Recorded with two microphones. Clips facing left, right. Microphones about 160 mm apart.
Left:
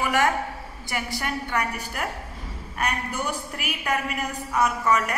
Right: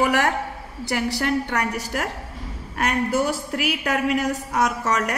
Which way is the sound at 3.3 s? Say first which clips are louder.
Right 6 dB; 90° right.